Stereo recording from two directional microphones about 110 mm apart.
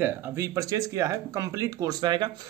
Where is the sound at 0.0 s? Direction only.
30° right (ahead or behind).